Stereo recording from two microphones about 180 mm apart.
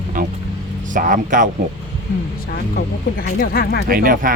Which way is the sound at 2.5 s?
55° left (ahead or behind).